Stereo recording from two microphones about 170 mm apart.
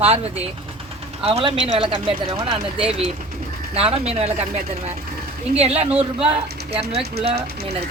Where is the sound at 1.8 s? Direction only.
30° right (ahead or behind).